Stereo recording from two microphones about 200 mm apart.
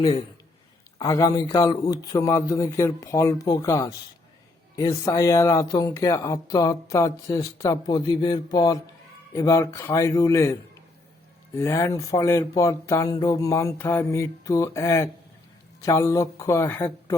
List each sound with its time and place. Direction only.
0.9 s speech: 15° left (ahead or behind)